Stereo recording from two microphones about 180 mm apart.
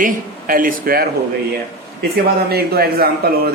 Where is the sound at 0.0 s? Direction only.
50° right (ahead or behind).